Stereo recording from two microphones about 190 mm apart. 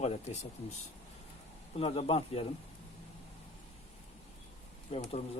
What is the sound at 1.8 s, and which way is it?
Speech, 30° left (ahead or behind).